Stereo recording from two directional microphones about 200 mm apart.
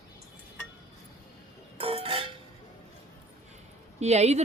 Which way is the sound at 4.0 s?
35° right (ahead or behind).